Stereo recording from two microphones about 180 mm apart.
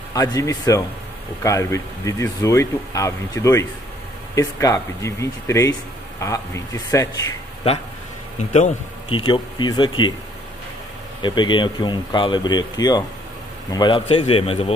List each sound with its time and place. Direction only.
0.1 s speech: 20° left (ahead or behind)
9.1 s speech: 25° left (ahead or behind)
11.2 s a man's voice: 25° left (ahead or behind)